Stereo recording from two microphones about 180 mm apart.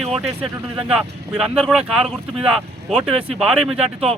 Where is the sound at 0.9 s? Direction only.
5° right (ahead or behind).